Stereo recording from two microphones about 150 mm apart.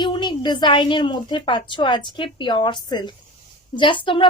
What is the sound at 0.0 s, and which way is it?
A woman's voice, 30° left (ahead or behind).